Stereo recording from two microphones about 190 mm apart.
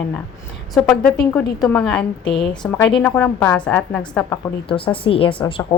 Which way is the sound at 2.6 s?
15° left (ahead or behind).